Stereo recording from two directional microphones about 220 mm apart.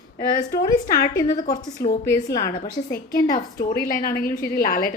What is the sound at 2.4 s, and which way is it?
A woman's voice, 45° left (ahead or behind).